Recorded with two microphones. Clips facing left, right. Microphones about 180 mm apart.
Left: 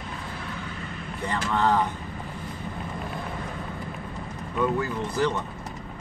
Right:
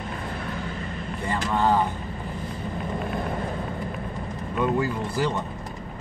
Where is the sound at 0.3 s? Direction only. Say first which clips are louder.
Right 4 dB; 40° right (ahead or behind).